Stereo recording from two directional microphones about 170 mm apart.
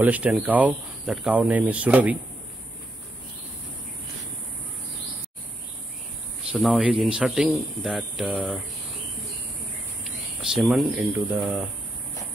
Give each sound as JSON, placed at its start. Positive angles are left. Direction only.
{"t": 0.0, "sound": "speech", "side_deg": -10}
{"t": 6.5, "sound": "speech", "side_deg": -5}
{"t": 10.0, "sound": "speech", "side_deg": 0}